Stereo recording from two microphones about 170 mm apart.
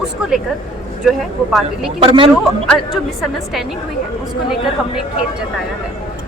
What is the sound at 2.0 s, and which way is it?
Speech, 30° right (ahead or behind).